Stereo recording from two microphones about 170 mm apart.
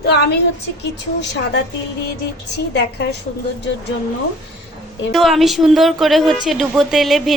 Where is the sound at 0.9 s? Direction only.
90° left.